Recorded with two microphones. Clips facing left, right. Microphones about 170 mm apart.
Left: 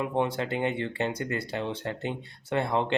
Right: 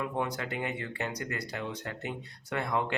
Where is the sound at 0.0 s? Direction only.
25° left (ahead or behind).